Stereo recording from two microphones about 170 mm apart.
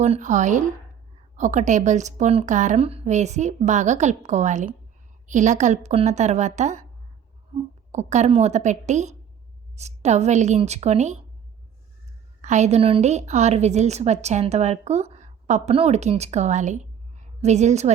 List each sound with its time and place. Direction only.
0.0 s a woman's voice: 45° right (ahead or behind)
12.4 s a woman's voice: 45° right (ahead or behind)